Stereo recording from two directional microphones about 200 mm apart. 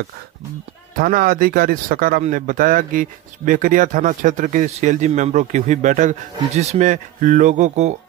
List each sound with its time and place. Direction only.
0.9 s speech: 45° right (ahead or behind)